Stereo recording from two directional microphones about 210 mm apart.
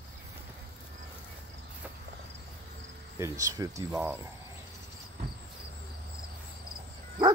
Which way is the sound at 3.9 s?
Centre (ahead or behind).